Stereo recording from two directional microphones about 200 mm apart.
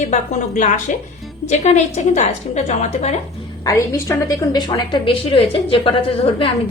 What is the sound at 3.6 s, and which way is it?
A woman's voice, 15° left (ahead or behind).